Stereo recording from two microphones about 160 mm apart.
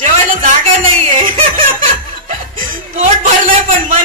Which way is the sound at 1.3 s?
35° right (ahead or behind).